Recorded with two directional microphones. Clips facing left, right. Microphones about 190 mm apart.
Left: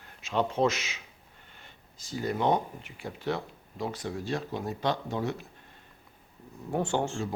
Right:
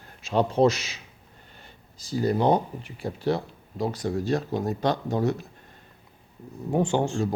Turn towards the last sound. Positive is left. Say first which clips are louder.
# right 5 dB
turn(degrees=-15)  # may be behind; listen again after turning